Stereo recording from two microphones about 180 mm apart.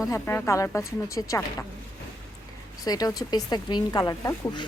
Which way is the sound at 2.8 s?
20° left (ahead or behind).